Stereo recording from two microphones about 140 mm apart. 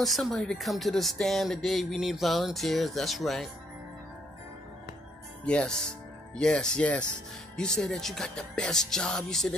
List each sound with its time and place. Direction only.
0.0 s speech: centre (ahead or behind)
5.4 s speech: 10° left (ahead or behind)